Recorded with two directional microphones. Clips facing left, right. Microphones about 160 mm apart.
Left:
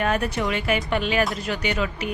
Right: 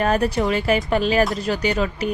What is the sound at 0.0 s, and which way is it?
A woman's voice, 35° right (ahead or behind).